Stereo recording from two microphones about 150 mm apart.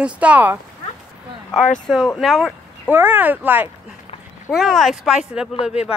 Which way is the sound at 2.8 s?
10° right (ahead or behind).